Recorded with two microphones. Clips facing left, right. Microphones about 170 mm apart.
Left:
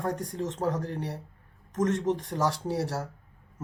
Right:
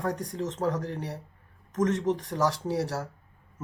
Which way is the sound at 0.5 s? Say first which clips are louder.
Right 1 dB; 30° left (ahead or behind).